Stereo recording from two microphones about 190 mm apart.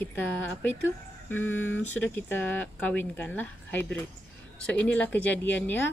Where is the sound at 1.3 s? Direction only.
10° left (ahead or behind).